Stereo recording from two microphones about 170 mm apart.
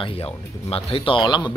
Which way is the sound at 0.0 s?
35° left (ahead or behind).